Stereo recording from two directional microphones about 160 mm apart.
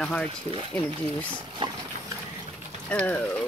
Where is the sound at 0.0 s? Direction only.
5° left (ahead or behind).